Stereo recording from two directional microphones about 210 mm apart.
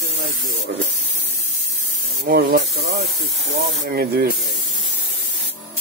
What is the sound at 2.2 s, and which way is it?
Speech, 45° right (ahead or behind).